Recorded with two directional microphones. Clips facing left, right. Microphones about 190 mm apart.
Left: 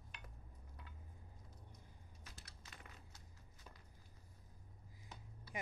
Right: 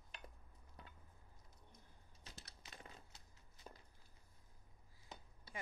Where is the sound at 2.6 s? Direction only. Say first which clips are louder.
Right 3 dB; 30° right (ahead or behind).